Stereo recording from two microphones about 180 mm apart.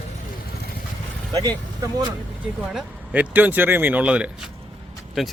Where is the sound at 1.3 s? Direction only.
20° right (ahead or behind).